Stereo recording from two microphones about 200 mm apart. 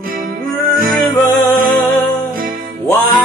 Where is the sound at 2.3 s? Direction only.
45° right (ahead or behind).